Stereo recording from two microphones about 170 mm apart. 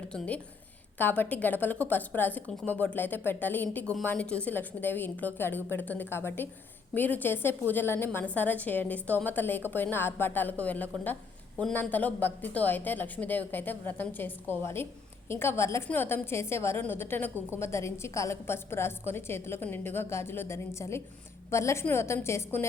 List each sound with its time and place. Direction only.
0.1 s a woman's voice: 5° left (ahead or behind)